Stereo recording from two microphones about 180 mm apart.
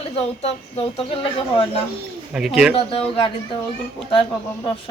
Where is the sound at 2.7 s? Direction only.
30° left (ahead or behind).